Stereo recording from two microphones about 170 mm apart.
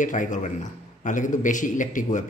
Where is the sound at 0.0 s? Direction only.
50° left (ahead or behind).